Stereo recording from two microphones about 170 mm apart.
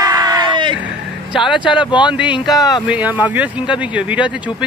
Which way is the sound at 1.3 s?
Centre (ahead or behind).